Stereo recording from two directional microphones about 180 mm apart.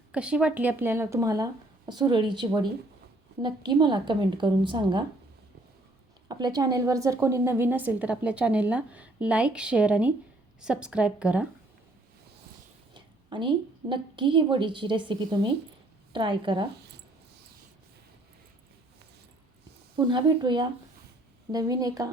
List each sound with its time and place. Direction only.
0.1 s a woman's voice: 5° right (ahead or behind); by 5.0 s 25° right (ahead or behind)
6.2 s a woman's voice: 20° right (ahead or behind); by 11.4 s 5° right (ahead or behind)
12.9 s a sound: 25° right (ahead or behind)
13.9 s a woman's voice: 25° right (ahead or behind)
20.0 s a woman's voice: 25° right (ahead or behind)